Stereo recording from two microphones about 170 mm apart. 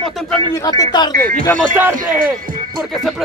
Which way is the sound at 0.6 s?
25° left (ahead or behind).